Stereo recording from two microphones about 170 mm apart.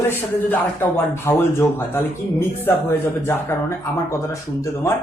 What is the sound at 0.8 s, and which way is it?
Speech, 15° left (ahead or behind).